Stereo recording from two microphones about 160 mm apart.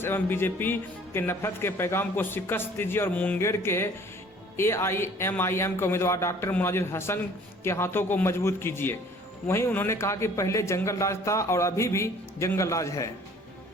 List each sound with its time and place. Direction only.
0.0 s speech: 15° left (ahead or behind)